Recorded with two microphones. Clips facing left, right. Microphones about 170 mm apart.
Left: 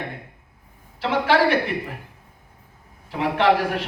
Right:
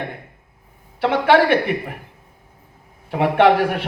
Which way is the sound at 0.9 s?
55° right (ahead or behind).